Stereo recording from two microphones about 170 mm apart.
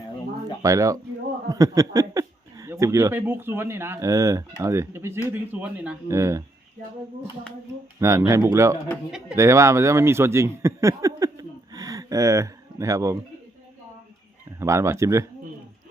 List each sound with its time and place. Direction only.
0.6 s speech: 20° right (ahead or behind)
7.9 s speech: 20° right (ahead or behind)
14.6 s speech: 15° right (ahead or behind)